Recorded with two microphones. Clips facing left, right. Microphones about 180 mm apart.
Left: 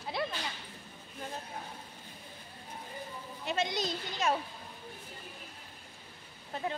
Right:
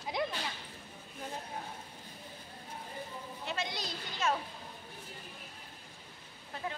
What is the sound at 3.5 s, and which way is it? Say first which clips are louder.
Speech: left 6 dB; 20° left (ahead or behind).